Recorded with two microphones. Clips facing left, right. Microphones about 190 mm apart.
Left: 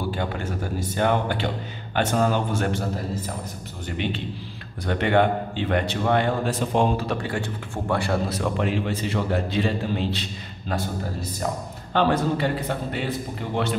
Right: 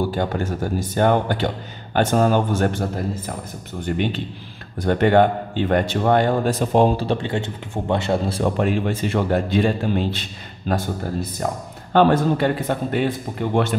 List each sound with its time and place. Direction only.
0.1 s a man's voice: 40° right (ahead or behind)
3.8 s a man's voice: 50° right (ahead or behind); by 8.5 s 25° right (ahead or behind)
8.5 s a man's voice: 50° right (ahead or behind)
11.9 s a man's voice: 50° right (ahead or behind)